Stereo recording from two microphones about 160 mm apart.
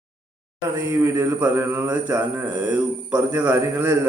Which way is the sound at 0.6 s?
20° right (ahead or behind).